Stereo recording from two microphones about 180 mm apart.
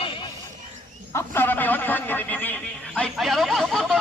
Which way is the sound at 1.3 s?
10° left (ahead or behind).